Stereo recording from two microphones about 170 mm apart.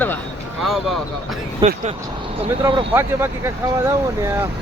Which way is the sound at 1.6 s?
30° right (ahead or behind).